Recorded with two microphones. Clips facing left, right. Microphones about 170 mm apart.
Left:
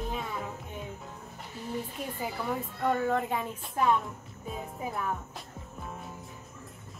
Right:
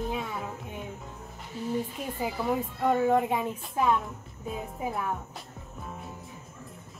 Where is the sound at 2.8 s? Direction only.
10° right (ahead or behind).